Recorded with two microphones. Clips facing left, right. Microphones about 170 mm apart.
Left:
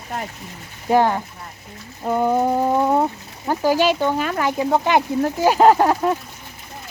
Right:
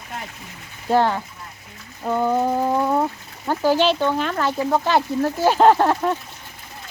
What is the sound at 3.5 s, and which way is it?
Speech, 10° left (ahead or behind).